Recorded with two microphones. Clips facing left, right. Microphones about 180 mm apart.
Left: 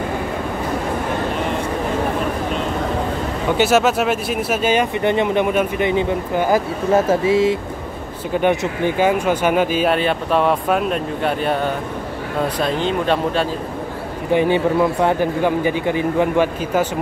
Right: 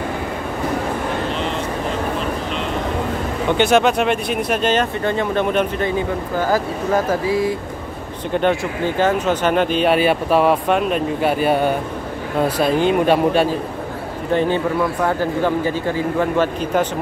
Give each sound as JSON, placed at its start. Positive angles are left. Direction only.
{"t": 3.5, "sound": "speech", "side_deg": 5}
{"t": 8.3, "sound": "speech", "side_deg": 10}
{"t": 9.9, "sound": "a man's voice", "side_deg": -5}
{"t": 14.3, "sound": "speech", "side_deg": 15}